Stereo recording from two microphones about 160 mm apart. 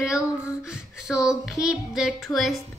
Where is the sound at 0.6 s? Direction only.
5° right (ahead or behind).